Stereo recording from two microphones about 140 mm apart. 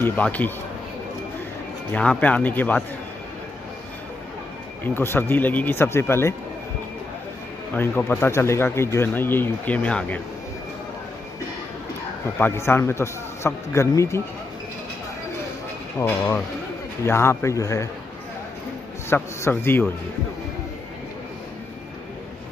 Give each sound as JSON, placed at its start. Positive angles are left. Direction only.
{"t": 0.0, "sound": "a man's voice", "side_deg": 10}
{"t": 1.9, "sound": "speech", "side_deg": 10}
{"t": 4.8, "sound": "speech", "side_deg": 15}
{"t": 7.7, "sound": "speech", "side_deg": 15}
{"t": 12.4, "sound": "a man's voice", "side_deg": 15}
{"t": 16.0, "sound": "a man's voice", "side_deg": 15}
{"t": 19.0, "sound": "speech", "side_deg": 15}